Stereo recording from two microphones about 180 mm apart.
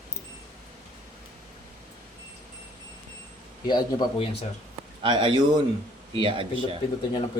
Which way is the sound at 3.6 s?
25° left (ahead or behind).